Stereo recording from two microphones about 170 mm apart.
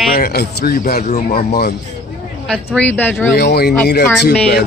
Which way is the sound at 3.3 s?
75° left (ahead or behind).